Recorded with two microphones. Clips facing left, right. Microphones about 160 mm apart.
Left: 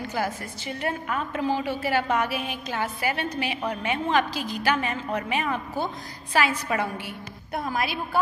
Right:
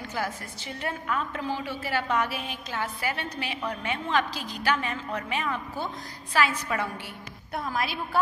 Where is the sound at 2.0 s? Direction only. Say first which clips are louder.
Left 1 dB; 55° left (ahead or behind).